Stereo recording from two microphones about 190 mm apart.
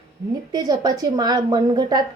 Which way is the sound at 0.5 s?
20° right (ahead or behind).